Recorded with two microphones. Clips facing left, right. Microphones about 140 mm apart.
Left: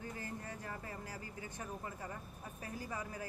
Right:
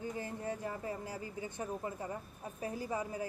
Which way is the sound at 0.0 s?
20° right (ahead or behind).